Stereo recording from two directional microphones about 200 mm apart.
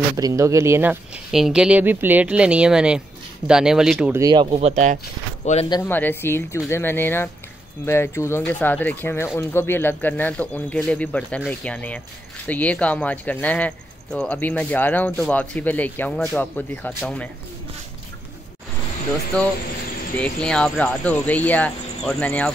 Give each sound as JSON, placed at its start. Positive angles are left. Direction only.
{"t": 0.2, "sound": "speech", "side_deg": -15}
{"t": 4.2, "sound": "speech", "side_deg": -20}
{"t": 5.4, "sound": "speech", "side_deg": 35}
{"t": 5.7, "sound": "speech", "side_deg": 10}
{"t": 19.3, "sound": "speech", "side_deg": 5}